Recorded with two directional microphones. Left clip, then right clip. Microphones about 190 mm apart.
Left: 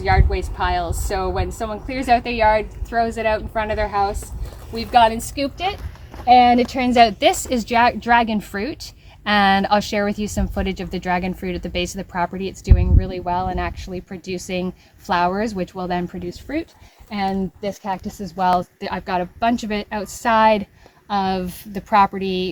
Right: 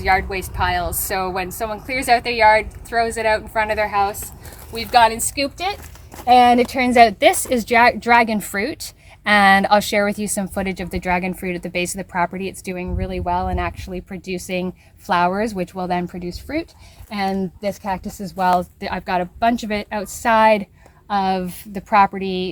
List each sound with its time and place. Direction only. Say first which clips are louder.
0.0 s a woman's voice: right 2 dB; 10° right (ahead or behind)